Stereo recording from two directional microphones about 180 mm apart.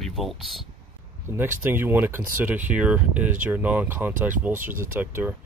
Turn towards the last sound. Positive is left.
turn(degrees=-10)  # may be behind; listen again after turning